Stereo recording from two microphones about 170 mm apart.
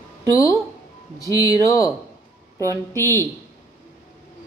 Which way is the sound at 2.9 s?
15° left (ahead or behind).